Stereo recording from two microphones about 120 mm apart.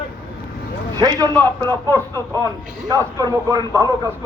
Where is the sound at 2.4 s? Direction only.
30° right (ahead or behind).